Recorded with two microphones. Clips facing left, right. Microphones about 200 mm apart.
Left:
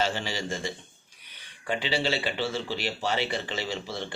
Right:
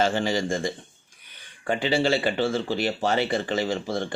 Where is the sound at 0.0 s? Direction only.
50° right (ahead or behind).